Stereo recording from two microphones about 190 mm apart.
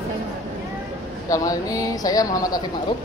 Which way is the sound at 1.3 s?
20° left (ahead or behind).